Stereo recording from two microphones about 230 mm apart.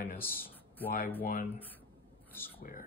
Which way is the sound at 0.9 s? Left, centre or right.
Left.